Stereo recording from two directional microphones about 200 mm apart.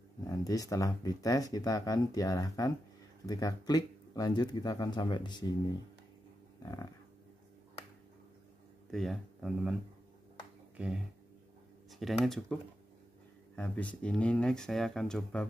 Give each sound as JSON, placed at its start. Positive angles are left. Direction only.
{"t": 0.3, "sound": "speech", "side_deg": 15}
{"t": 6.6, "sound": "speech", "side_deg": 20}
{"t": 8.9, "sound": "speech", "side_deg": 0}
{"t": 11.9, "sound": "speech", "side_deg": 0}
{"t": 13.6, "sound": "speech", "side_deg": 5}